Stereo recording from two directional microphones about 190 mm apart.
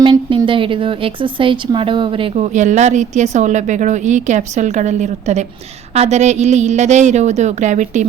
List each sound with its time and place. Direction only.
0.0 s a woman's voice: 25° right (ahead or behind)